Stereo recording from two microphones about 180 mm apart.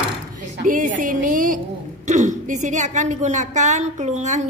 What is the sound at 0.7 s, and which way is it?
A woman's voice, 45° right (ahead or behind).